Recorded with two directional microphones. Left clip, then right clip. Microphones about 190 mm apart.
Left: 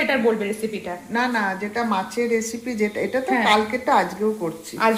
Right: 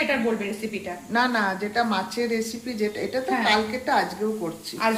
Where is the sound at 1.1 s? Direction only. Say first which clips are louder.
Even; 10° right (ahead or behind).